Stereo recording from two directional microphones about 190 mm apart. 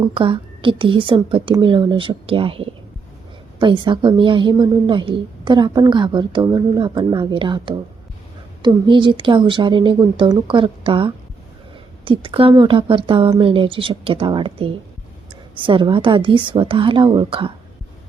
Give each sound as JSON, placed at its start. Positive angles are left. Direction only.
{"t": 0.1, "sound": "a woman's voice", "side_deg": -25}